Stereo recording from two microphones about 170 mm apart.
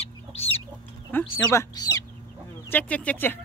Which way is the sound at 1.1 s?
15° left (ahead or behind).